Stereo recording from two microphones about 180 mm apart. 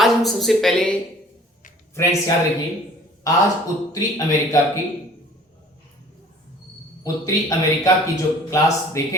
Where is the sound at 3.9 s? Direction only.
20° left (ahead or behind).